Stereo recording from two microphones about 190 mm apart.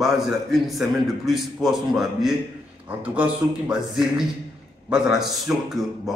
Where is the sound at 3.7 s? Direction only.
Centre (ahead or behind).